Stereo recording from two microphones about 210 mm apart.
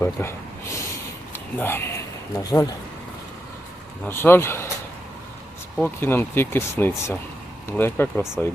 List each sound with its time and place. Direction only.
0.0 s speech: 10° left (ahead or behind)
4.0 s speech: 10° left (ahead or behind)
5.7 s speech: 10° left (ahead or behind)